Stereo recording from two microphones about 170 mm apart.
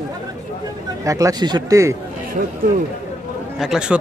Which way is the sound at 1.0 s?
20° right (ahead or behind).